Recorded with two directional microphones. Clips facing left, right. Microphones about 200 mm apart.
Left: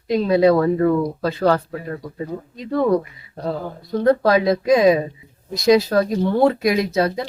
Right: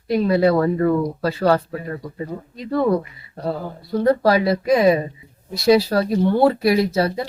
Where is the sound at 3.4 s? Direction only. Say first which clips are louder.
Even; 10° right (ahead or behind).